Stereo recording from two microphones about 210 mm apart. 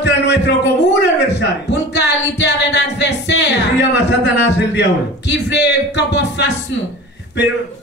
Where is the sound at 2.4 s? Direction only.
55° left (ahead or behind).